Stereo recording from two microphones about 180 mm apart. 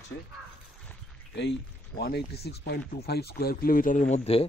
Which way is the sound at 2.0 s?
65° left (ahead or behind).